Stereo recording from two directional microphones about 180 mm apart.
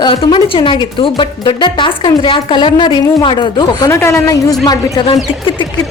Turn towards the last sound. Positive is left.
turn(degrees=35)  # may be behind; listen again after turning